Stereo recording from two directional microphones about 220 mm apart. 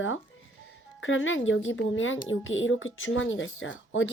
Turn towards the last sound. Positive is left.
turn(degrees=60)  # may be behind; listen again after turning